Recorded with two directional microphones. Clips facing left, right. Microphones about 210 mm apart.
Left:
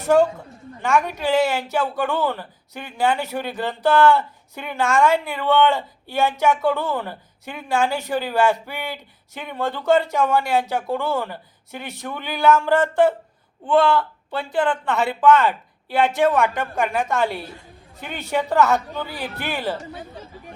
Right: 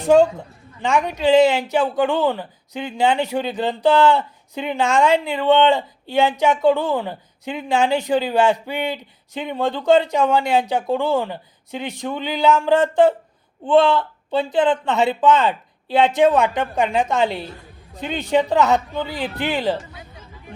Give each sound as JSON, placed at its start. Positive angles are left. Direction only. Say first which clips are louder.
{"t": 0.0, "sound": "a woman's voice", "louder": "right 3 dB", "side_deg": -15}
{"t": 19.9, "sound": "chatter", "louder": "left 6 dB", "side_deg": 30}